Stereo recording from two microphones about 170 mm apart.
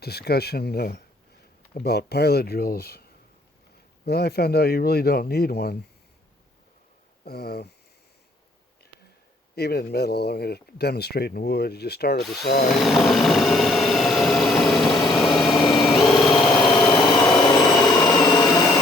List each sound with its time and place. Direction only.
0.0 s speech: 70° left (ahead or behind)
4.0 s speech: 70° left (ahead or behind)
7.3 s speech: 70° left (ahead or behind)
9.6 s speech: 70° left (ahead or behind)
12.8 s vehicle: centre (ahead or behind)
15.5 s vehicle: 25° left (ahead or behind)
16.0 s vehicle: centre (ahead or behind)
16.6 s a sound: 25° left (ahead or behind)